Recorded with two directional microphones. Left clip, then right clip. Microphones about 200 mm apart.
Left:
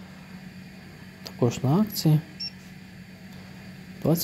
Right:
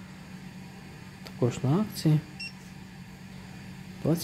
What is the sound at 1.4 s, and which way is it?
Speech, 10° left (ahead or behind).